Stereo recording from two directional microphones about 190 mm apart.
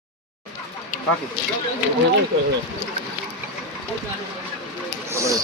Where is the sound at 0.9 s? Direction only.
45° left (ahead or behind).